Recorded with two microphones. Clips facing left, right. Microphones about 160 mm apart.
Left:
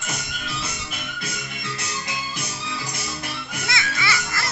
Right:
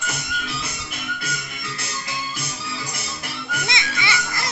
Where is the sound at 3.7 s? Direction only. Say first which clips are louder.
Left 2 dB; 20° right (ahead or behind).